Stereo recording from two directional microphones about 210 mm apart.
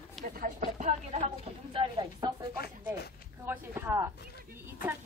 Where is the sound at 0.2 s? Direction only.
40° right (ahead or behind); by 2.3 s 20° right (ahead or behind).